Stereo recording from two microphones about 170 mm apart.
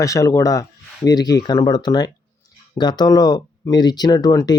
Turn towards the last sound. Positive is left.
turn(degrees=25)  # may be behind; listen again after turning